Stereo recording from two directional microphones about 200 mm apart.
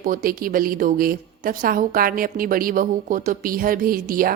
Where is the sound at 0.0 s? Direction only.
45° right (ahead or behind).